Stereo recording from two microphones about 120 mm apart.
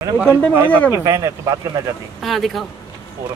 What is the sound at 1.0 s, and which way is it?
Speech, 25° right (ahead or behind).